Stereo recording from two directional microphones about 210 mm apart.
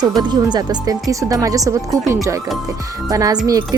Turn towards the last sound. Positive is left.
turn(degrees=-15)  # may be behind; listen again after turning